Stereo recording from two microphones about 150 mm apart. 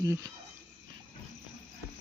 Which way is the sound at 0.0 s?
20° right (ahead or behind).